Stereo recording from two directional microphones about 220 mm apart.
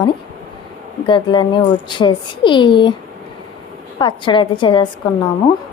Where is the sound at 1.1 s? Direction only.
20° left (ahead or behind).